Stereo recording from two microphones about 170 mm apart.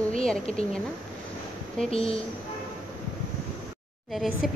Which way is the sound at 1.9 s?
35° left (ahead or behind).